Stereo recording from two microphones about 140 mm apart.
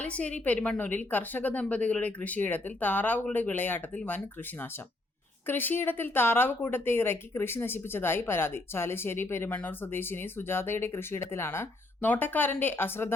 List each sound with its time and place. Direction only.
0.0 s a woman's voice: 10° left (ahead or behind)
5.5 s a woman's voice: 15° left (ahead or behind)